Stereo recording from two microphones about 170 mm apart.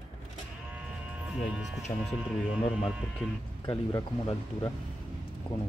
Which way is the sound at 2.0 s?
5° right (ahead or behind).